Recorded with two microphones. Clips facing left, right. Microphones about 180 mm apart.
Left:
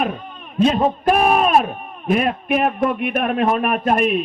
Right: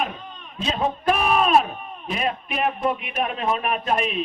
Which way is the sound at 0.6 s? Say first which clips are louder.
Left 8 dB; 50° left (ahead or behind).